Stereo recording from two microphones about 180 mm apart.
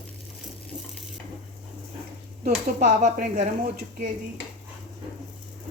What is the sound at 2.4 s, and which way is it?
Speech, 40° right (ahead or behind).